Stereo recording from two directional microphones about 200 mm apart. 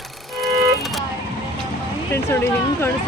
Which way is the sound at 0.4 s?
Centre (ahead or behind).